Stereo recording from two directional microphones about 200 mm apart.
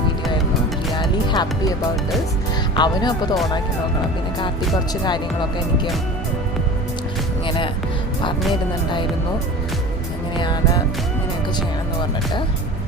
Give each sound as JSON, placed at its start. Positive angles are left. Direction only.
{"t": 1.3, "sound": "speech", "side_deg": 20}
{"t": 2.7, "sound": "speech", "side_deg": 20}
{"t": 7.4, "sound": "music", "side_deg": 25}
{"t": 10.3, "sound": "speech", "side_deg": 20}